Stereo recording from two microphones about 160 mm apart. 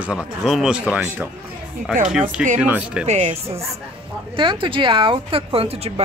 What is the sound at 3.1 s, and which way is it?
Speech, 45° right (ahead or behind).